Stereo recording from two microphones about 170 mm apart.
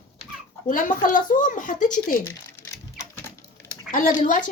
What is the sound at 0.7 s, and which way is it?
Speech, 50° left (ahead or behind).